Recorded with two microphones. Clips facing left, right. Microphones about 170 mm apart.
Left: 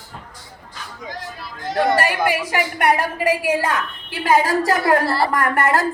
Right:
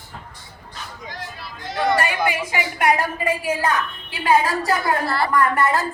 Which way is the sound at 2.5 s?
65° left (ahead or behind).